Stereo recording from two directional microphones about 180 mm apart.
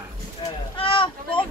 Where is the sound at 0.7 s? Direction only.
30° left (ahead or behind).